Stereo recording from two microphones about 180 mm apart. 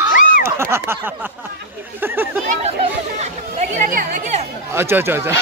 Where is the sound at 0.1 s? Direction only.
50° left (ahead or behind).